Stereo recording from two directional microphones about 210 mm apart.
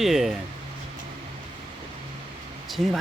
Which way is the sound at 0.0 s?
Centre (ahead or behind).